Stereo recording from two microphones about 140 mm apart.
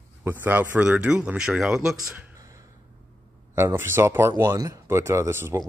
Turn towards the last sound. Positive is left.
turn(degrees=-20)  # may be behind; listen again after turning